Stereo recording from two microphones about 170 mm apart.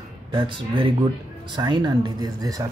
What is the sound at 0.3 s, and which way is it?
Speech, 30° right (ahead or behind).